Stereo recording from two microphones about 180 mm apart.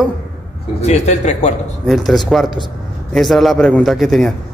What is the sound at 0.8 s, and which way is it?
Speech, 40° left (ahead or behind).